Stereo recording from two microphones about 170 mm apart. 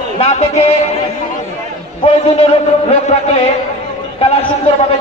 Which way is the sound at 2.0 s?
35° left (ahead or behind).